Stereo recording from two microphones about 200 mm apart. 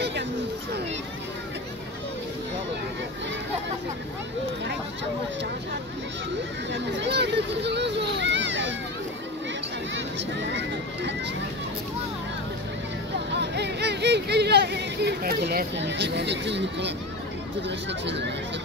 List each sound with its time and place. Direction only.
6.7 s children playing: 60° right (ahead or behind)
13.3 s speech: 55° right (ahead or behind)